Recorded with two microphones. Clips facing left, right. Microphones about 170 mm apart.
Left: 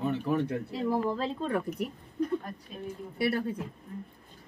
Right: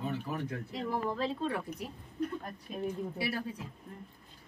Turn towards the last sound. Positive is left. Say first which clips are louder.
# left 6 dB
turn(degrees=60)  # may be behind; listen again after turning